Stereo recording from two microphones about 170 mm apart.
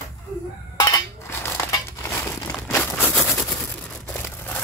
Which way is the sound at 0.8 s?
20° left (ahead or behind).